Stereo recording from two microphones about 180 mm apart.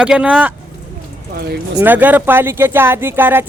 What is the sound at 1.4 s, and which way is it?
Speech, 60° right (ahead or behind).